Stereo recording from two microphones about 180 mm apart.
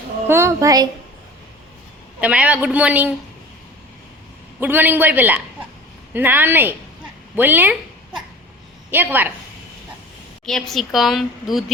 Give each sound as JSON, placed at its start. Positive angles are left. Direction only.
{"t": 0.3, "sound": "a man's voice", "side_deg": -15}
{"t": 2.2, "sound": "a man's voice", "side_deg": -5}
{"t": 4.6, "sound": "a man's voice", "side_deg": -10}
{"t": 10.4, "sound": "a woman's voice", "side_deg": 0}